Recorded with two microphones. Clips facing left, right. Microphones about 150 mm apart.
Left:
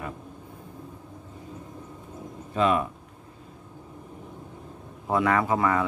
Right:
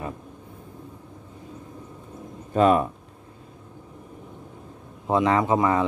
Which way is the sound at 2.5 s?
40° right (ahead or behind).